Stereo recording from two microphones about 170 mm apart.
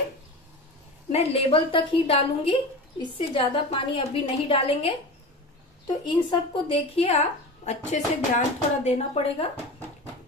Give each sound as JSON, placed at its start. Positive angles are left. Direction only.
{"t": 1.1, "sound": "a woman's voice", "side_deg": 35}
{"t": 6.0, "sound": "a woman's voice", "side_deg": 30}